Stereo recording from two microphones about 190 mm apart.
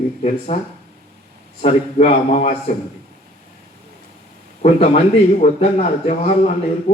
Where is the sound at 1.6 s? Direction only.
35° left (ahead or behind).